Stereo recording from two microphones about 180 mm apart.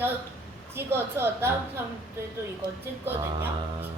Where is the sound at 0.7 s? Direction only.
15° right (ahead or behind).